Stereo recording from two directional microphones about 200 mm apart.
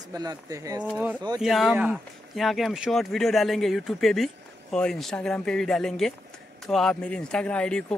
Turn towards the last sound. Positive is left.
turn(degrees=5)  # may be behind; listen again after turning